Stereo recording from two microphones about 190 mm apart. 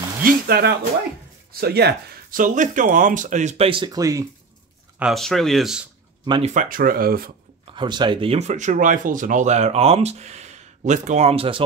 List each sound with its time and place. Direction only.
0.2 s speech: 55° right (ahead or behind)
2.4 s speech: 40° right (ahead or behind); by 4.3 s 15° right (ahead or behind)
4.9 s speech: centre (ahead or behind)
6.2 s speech: 25° right (ahead or behind)
6.5 s speech: 45° right (ahead or behind)
7.7 s speech: 25° right (ahead or behind)